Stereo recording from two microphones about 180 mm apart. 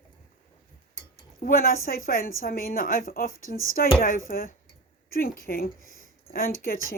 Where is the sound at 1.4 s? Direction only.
55° left (ahead or behind).